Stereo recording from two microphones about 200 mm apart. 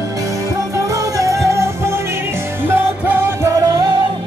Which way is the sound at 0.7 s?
15° right (ahead or behind).